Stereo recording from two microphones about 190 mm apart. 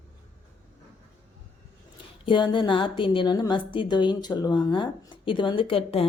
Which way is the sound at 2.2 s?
25° left (ahead or behind).